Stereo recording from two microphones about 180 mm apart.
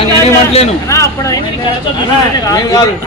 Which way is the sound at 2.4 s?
20° left (ahead or behind).